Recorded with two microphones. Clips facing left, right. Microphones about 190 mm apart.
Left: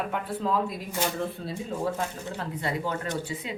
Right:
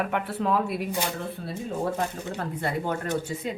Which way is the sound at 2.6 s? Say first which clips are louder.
Right 1 dB; 55° right (ahead or behind).